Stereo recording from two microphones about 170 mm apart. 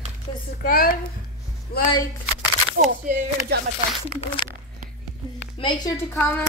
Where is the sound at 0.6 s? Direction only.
60° left (ahead or behind).